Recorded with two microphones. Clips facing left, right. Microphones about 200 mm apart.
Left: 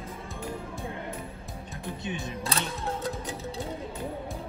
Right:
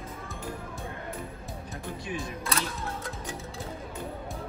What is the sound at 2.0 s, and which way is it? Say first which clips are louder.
Speech: left 2 dB; 25° left (ahead or behind).